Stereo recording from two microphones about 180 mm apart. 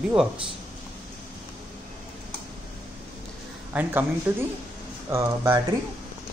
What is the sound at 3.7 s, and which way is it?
Speech, 10° right (ahead or behind).